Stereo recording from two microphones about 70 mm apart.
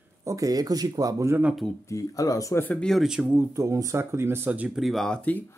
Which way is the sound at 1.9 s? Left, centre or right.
Left.